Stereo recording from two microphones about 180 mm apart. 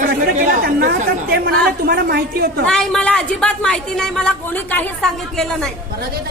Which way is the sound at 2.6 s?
5° left (ahead or behind).